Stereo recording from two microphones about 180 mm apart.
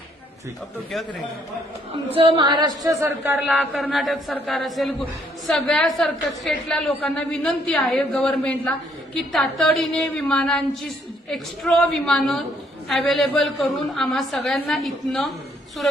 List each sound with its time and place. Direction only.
2.1 s speech: 30° right (ahead or behind)
3.3 s a woman's voice: centre (ahead or behind)